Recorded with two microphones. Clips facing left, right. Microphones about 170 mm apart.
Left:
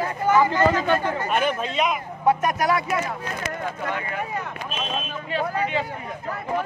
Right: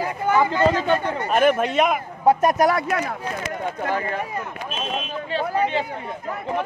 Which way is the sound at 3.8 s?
35° right (ahead or behind).